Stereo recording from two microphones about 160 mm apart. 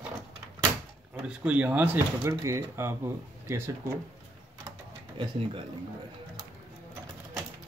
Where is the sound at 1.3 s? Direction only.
10° right (ahead or behind).